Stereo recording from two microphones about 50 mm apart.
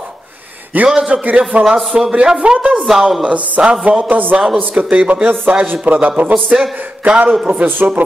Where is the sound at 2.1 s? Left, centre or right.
Right.